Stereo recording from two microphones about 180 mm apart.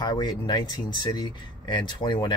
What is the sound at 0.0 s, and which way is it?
Speech, 20° left (ahead or behind).